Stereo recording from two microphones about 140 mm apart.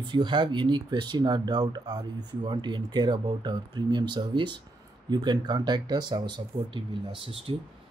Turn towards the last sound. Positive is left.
turn(degrees=-40)  # may be behind; listen again after turning